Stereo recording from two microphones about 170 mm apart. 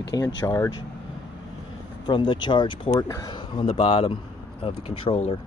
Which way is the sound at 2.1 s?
30° left (ahead or behind).